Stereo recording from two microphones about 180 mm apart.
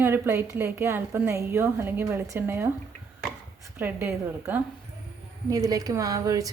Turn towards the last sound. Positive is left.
turn(degrees=-20)  # may be behind; listen again after turning